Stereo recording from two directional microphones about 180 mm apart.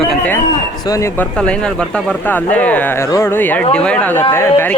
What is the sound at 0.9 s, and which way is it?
Speech, 15° left (ahead or behind).